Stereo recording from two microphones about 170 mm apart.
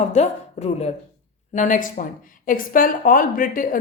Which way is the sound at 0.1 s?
40° left (ahead or behind).